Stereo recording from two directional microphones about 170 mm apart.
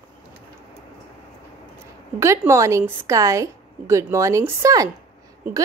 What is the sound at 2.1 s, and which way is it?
A woman's voice, 15° right (ahead or behind).